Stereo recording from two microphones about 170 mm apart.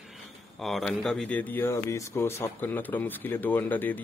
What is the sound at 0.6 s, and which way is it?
Speech, centre (ahead or behind).